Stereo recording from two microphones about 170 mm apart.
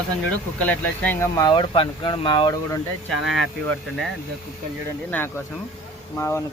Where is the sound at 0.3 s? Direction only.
10° left (ahead or behind); by 2.6 s 25° left (ahead or behind).